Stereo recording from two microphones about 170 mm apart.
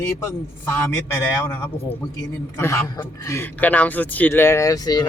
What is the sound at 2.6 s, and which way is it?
A man's voice, 15° left (ahead or behind).